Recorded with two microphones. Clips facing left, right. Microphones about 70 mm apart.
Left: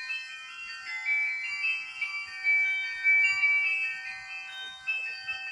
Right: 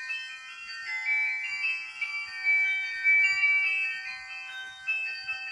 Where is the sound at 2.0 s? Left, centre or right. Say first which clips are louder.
Right 3 dB; centre.